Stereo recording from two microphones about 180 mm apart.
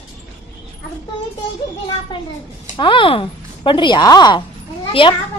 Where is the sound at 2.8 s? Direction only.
30° left (ahead or behind).